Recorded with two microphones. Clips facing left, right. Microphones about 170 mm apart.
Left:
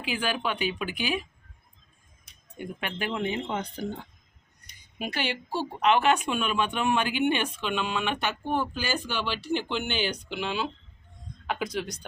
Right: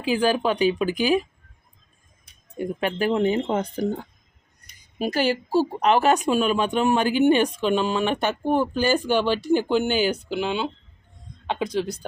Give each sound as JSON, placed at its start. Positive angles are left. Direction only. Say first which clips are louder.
{"t": 0.0, "sound": "speech", "louder": "right 9 dB", "side_deg": -40}
{"t": 2.6, "sound": "speech", "louder": "right 9 dB", "side_deg": -40}